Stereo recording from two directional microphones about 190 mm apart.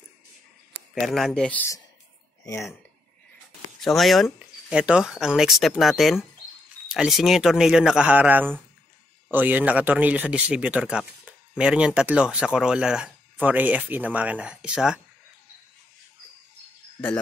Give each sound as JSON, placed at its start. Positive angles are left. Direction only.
{"t": 0.9, "sound": "speech", "side_deg": 0}
{"t": 2.4, "sound": "speech", "side_deg": 15}
{"t": 3.8, "sound": "speech", "side_deg": 0}